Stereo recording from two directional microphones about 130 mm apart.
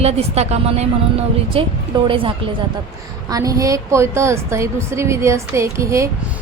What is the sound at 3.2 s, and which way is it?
A woman's voice, 25° right (ahead or behind).